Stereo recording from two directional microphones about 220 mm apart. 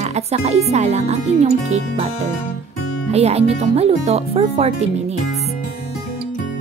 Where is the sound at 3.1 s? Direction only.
30° right (ahead or behind).